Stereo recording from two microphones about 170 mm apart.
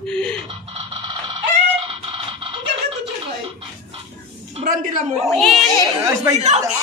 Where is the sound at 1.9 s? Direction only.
30° right (ahead or behind).